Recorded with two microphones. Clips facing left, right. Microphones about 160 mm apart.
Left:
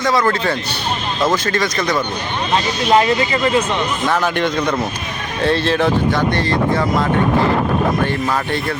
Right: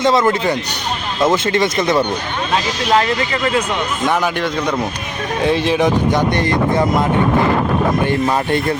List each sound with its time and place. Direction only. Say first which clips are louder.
0.0 s speech: right 3 dB; 20° right (ahead or behind)
4.0 s speech: right 1 dB; 15° right (ahead or behind)